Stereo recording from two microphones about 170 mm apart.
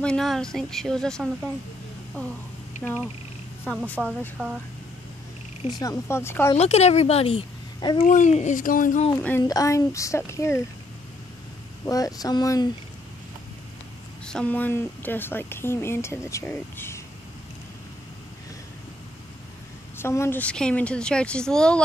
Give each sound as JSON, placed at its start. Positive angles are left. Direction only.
{"t": 0.0, "sound": "a woman's voice", "side_deg": 5}
{"t": 3.7, "sound": "speech", "side_deg": 10}
{"t": 5.7, "sound": "speech", "side_deg": 20}
{"t": 6.5, "sound": "a woman's voice", "side_deg": 40}
{"t": 8.0, "sound": "a child's voice", "side_deg": 45}
{"t": 9.5, "sound": "speech", "side_deg": 20}
{"t": 11.8, "sound": "speech", "side_deg": 20}
{"t": 14.2, "sound": "speech", "side_deg": 5}
{"t": 20.0, "sound": "a woman's voice", "side_deg": 15}